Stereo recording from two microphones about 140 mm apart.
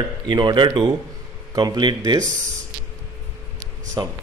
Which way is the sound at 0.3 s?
35° right (ahead or behind).